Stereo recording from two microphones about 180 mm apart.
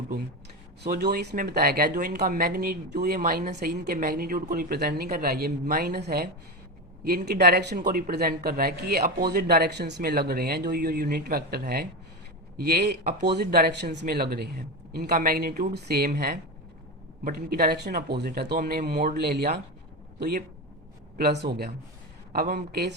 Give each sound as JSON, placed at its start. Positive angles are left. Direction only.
{"t": 0.8, "sound": "speech", "side_deg": -65}
{"t": 7.8, "sound": "speech", "side_deg": -55}
{"t": 21.2, "sound": "speech", "side_deg": -65}